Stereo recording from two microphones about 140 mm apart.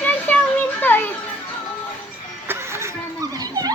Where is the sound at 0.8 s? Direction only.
15° left (ahead or behind).